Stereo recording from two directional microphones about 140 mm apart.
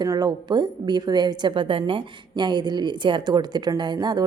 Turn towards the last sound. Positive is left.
turn(degrees=-30)  # may be behind; listen again after turning